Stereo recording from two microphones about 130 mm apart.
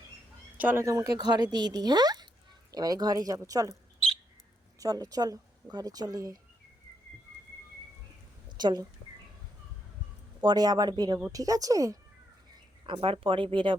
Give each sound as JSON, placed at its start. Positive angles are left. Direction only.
{"t": 0.5, "sound": "speech", "side_deg": -15}
{"t": 4.8, "sound": "speech", "side_deg": -30}
{"t": 8.4, "sound": "a woman's voice", "side_deg": -35}
{"t": 10.4, "sound": "speech", "side_deg": -30}
{"t": 12.8, "sound": "speech", "side_deg": -40}